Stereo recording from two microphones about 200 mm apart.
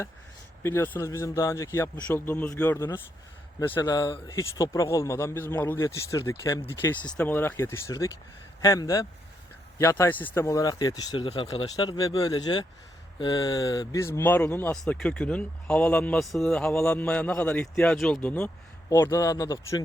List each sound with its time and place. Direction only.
0.6 s speech: 10° left (ahead or behind)